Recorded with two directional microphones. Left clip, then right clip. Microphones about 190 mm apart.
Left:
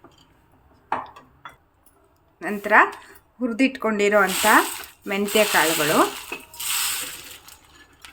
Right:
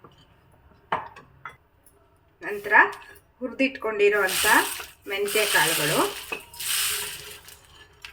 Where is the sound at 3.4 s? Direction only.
50° left (ahead or behind).